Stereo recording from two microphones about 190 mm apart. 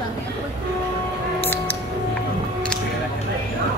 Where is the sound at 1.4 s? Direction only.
10° left (ahead or behind).